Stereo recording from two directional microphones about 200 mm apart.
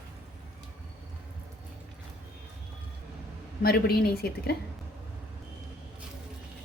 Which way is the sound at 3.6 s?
50° left (ahead or behind).